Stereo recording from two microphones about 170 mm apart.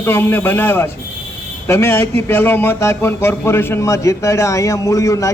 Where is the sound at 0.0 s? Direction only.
10° left (ahead or behind).